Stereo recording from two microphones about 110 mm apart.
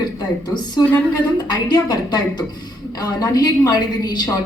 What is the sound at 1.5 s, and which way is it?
Speech, 40° left (ahead or behind).